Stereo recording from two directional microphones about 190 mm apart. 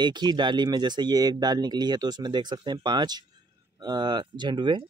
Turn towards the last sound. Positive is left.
turn(degrees=-25)  # may be behind; listen again after turning